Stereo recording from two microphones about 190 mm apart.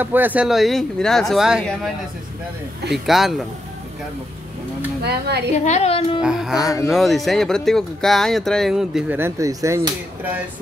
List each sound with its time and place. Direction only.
0.0 s speech: 10° right (ahead or behind)
2.9 s speech: centre (ahead or behind)
5.0 s a woman's voice: 60° right (ahead or behind)
5.7 s a woman's voice: 35° left (ahead or behind)
6.2 s speech: 5° right (ahead or behind)